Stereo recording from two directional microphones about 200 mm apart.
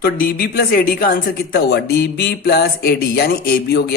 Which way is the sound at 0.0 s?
50° left (ahead or behind).